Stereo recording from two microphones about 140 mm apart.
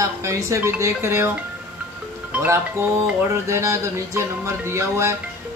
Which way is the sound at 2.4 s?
20° right (ahead or behind).